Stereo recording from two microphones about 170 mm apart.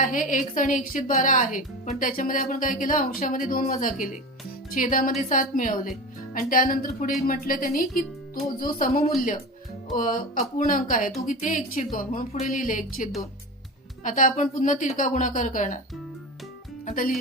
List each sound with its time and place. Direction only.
0.0 s a woman's voice: 50° left (ahead or behind)
16.8 s speech: 55° left (ahead or behind)